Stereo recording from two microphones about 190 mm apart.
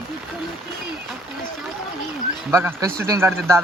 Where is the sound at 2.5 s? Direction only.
15° right (ahead or behind).